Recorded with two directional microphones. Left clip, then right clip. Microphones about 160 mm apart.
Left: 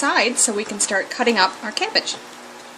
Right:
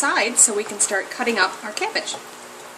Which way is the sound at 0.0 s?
40° left (ahead or behind).